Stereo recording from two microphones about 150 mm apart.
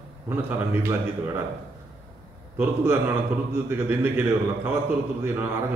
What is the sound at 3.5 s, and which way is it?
A man's voice, 15° right (ahead or behind).